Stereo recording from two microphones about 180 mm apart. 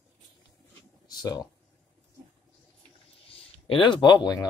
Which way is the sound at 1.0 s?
20° left (ahead or behind).